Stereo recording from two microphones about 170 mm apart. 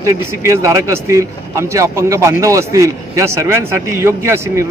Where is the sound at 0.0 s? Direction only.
15° right (ahead or behind).